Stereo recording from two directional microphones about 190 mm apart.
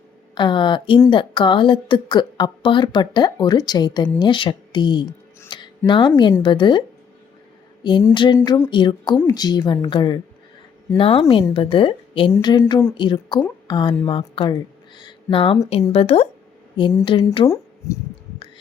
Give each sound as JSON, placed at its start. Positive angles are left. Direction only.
{"t": 0.3, "sound": "speech", "side_deg": 25}
{"t": 7.9, "sound": "speech", "side_deg": 25}